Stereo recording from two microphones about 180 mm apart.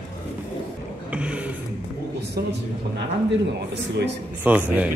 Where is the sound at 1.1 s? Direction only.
5° right (ahead or behind).